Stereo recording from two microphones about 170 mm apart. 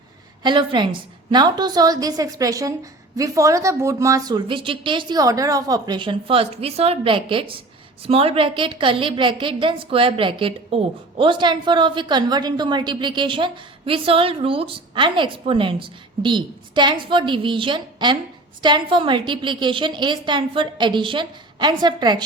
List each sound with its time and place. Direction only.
0.4 s a woman's voice: 25° right (ahead or behind)